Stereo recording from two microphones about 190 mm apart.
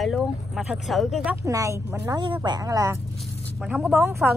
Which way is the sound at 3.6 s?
Centre (ahead or behind).